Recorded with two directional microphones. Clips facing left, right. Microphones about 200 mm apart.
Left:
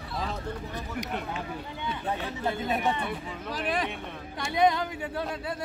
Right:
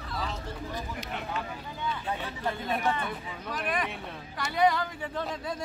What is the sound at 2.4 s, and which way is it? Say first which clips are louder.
Speech: left 2 dB; 20° left (ahead or behind).